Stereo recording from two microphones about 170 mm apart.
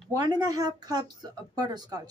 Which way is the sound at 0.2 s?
20° right (ahead or behind).